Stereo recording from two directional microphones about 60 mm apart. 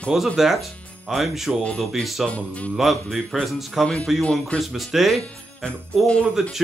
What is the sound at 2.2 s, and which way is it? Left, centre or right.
Speech, left.